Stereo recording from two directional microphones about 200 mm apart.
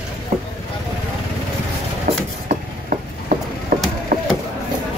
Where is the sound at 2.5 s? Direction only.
40° right (ahead or behind).